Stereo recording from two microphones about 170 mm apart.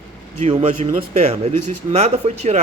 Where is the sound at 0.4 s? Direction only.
35° right (ahead or behind).